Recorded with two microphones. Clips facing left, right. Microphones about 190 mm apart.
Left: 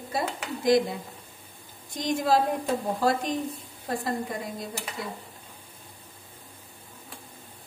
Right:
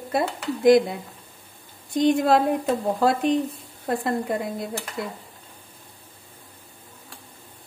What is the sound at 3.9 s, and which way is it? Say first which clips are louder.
A woman's voice: right 5 dB; 65° right (ahead or behind).